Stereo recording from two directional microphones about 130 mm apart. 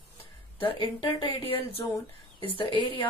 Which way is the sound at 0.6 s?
40° left (ahead or behind).